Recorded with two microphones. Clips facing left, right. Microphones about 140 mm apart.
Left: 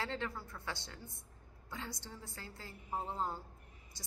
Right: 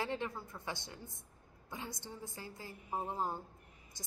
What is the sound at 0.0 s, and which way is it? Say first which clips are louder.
A woman's voice: right 2 dB; 15° right (ahead or behind).